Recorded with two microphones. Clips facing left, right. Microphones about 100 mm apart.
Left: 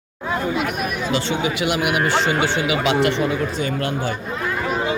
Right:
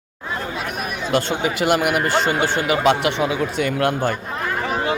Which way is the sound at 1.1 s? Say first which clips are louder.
Right 3 dB; 45° right (ahead or behind).